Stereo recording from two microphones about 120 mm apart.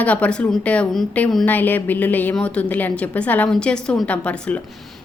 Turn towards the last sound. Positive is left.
turn(degrees=10)  # may be behind; listen again after turning